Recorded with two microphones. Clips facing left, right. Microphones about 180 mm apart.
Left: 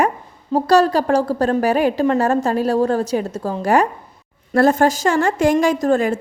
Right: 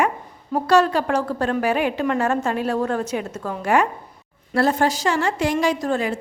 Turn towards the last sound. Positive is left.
turn(degrees=45)  # may be behind; listen again after turning